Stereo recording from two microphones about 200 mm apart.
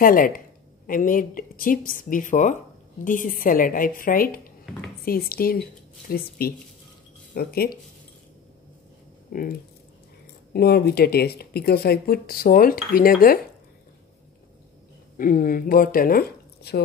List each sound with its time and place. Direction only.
0.0 s speech: 45° left (ahead or behind)
9.3 s speech: 45° left (ahead or behind)
15.1 s speech: 45° left (ahead or behind)